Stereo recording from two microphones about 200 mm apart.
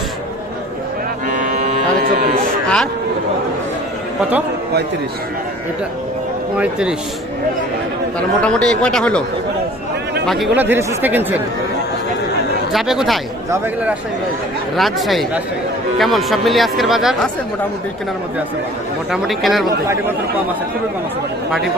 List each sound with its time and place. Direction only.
1.3 s cattle: 40° right (ahead or behind)
2.6 s speech: 5° left (ahead or behind)
6.6 s speech: 5° right (ahead or behind)
8.4 s speech: 5° left (ahead or behind)
10.2 s speech: centre (ahead or behind)
12.7 s speech: centre (ahead or behind)
14.8 s speech: centre (ahead or behind)
19.1 s speech: centre (ahead or behind)